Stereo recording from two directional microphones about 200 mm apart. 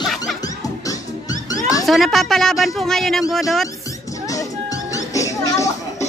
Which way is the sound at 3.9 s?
15° left (ahead or behind).